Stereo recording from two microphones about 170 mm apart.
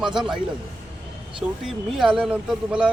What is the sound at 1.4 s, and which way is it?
Speech, centre (ahead or behind).